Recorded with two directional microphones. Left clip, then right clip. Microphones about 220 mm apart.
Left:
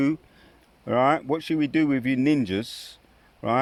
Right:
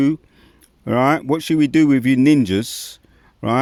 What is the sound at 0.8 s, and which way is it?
Speech, 45° right (ahead or behind).